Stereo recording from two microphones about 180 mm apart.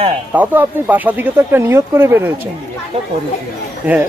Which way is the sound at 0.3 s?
10° right (ahead or behind).